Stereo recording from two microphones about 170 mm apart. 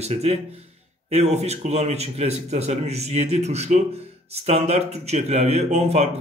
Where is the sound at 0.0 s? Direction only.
40° right (ahead or behind).